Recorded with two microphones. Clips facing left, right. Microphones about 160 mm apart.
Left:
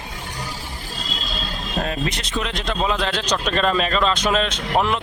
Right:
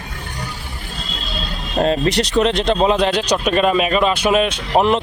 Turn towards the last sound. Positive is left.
turn(degrees=-25)  # may be behind; listen again after turning